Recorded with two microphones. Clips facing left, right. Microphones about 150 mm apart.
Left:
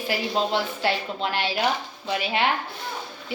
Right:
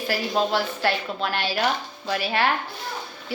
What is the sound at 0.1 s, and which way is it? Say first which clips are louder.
A woman's voice: right 1 dB; 20° left (ahead or behind).